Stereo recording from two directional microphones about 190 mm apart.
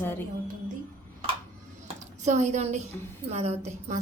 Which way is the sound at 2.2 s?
35° right (ahead or behind).